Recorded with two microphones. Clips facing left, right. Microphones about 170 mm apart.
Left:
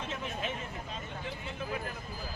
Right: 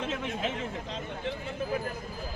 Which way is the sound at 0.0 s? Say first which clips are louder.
Right 5 dB; 90° right.